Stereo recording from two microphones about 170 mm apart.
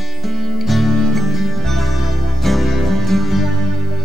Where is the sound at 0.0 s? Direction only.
Centre (ahead or behind).